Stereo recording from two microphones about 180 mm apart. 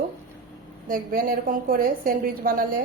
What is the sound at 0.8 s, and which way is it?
A woman's voice, 50° right (ahead or behind).